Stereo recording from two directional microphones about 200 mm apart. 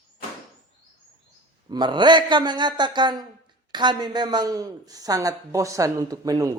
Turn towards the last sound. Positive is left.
turn(degrees=-15)  # may be behind; listen again after turning